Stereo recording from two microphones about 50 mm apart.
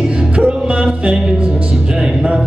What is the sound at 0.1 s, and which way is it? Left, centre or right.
Music, right.